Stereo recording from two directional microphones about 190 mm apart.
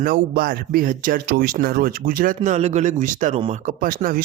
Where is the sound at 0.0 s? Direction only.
50° right (ahead or behind).